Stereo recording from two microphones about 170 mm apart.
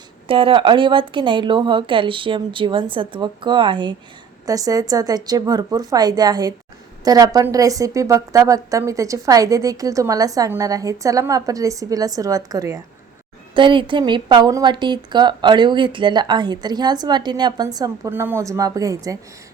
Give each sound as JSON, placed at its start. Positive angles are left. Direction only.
{"t": 0.3, "sound": "a woman's voice", "side_deg": -30}